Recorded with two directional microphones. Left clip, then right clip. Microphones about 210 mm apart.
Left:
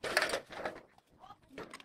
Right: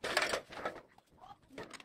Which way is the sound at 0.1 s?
5° left (ahead or behind).